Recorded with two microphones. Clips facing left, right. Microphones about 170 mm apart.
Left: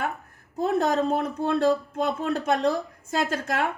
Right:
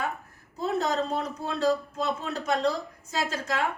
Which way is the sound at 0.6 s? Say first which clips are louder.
Left 4 dB; 55° left (ahead or behind).